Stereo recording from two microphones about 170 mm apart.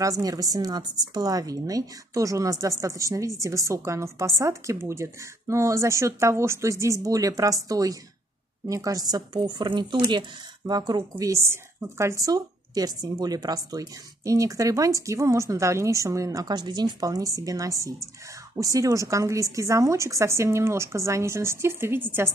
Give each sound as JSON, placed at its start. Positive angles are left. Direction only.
{"t": 0.2, "sound": "a woman's voice", "side_deg": -20}